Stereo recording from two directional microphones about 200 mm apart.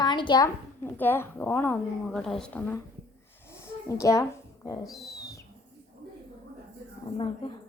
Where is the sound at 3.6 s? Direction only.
15° left (ahead or behind).